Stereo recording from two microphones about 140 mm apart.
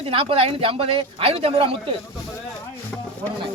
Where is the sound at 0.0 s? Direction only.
40° right (ahead or behind).